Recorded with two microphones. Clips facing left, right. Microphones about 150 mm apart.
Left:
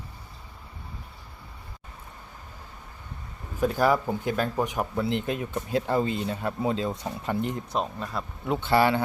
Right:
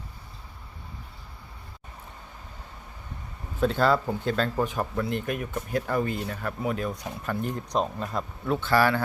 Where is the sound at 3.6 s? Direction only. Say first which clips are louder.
Even; 10° left (ahead or behind).